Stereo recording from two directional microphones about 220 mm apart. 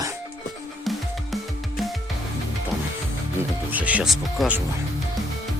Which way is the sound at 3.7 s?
5° right (ahead or behind).